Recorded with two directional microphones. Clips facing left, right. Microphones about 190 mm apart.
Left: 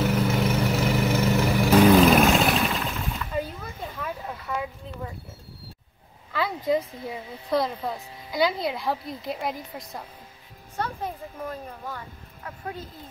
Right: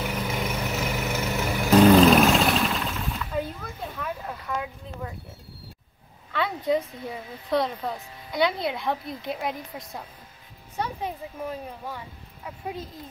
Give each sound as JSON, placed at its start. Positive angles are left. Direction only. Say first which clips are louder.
{"t": 0.3, "sound": "vehicle", "louder": "left 5 dB", "side_deg": 5}
{"t": 3.9, "sound": "a sound", "louder": "even", "side_deg": 0}
{"t": 6.3, "sound": "speech", "louder": "even", "side_deg": 0}